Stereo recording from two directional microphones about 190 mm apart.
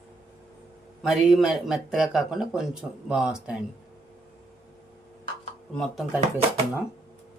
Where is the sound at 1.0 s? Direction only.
Centre (ahead or behind).